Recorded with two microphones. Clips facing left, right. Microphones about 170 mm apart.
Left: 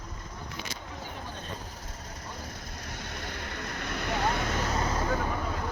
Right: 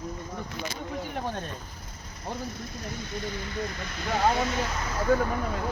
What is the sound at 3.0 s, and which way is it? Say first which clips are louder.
Speech: right 5 dB; 60° left (ahead or behind).